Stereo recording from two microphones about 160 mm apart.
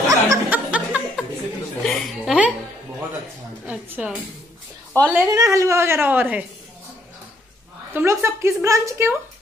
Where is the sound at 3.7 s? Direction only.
10° right (ahead or behind).